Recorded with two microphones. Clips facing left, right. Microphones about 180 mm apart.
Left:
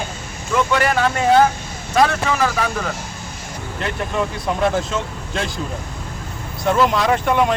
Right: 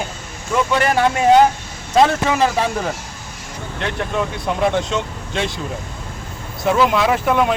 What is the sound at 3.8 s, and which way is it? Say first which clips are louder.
Speech: even; centre (ahead or behind).